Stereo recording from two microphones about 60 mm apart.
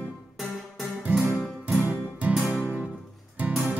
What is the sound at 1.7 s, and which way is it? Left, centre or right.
Music, right.